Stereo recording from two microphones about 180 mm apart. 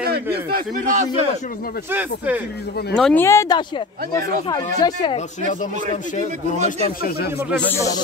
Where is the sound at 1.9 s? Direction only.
10° right (ahead or behind).